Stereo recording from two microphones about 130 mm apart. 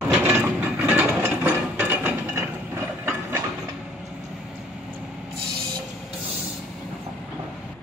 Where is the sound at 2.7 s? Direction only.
20° right (ahead or behind).